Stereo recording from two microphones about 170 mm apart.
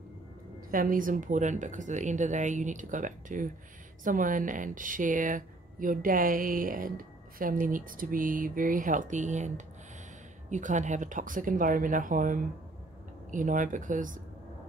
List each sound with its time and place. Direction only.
0.7 s speech: 55° right (ahead or behind)
10.5 s speech: 45° right (ahead or behind)